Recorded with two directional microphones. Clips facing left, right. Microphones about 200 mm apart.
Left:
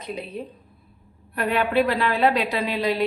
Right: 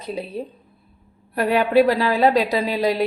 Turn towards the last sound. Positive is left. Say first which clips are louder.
# right 3 dB
turn(degrees=-40)  # may be behind; listen again after turning